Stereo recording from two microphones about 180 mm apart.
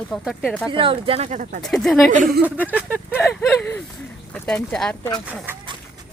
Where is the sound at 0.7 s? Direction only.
30° right (ahead or behind).